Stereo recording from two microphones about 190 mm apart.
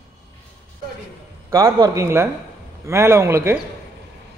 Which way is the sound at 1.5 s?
20° right (ahead or behind).